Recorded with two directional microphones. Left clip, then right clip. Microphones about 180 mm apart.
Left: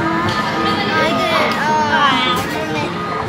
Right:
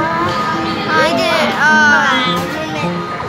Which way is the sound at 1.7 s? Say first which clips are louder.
Right 3 dB; 50° right (ahead or behind).